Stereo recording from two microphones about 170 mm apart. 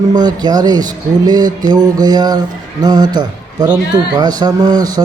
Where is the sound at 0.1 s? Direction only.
25° right (ahead or behind).